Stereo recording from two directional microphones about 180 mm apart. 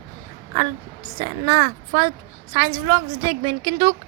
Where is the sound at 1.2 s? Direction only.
40° right (ahead or behind).